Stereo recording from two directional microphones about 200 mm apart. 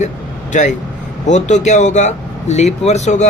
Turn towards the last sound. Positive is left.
turn(degrees=35)  # may be behind; listen again after turning